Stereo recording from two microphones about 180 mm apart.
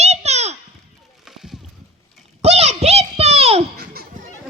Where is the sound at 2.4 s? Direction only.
35° right (ahead or behind).